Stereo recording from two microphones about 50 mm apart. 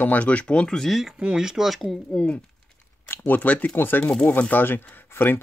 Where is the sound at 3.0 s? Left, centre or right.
Left.